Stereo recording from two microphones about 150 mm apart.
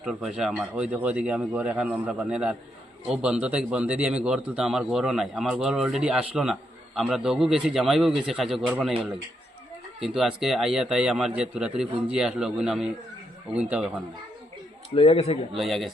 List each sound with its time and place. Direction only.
0.0 s a man's voice: 5° right (ahead or behind)
10.0 s a man's voice: 5° right (ahead or behind)
14.9 s speech: 45° left (ahead or behind)
15.5 s a man's voice: centre (ahead or behind)